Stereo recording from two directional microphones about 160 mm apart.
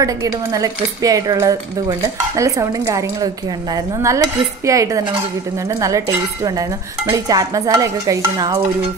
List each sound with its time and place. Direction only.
0.0 s speech: 20° right (ahead or behind)